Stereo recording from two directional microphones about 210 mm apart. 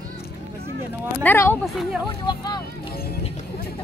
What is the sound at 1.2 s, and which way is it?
Speech, 10° left (ahead or behind).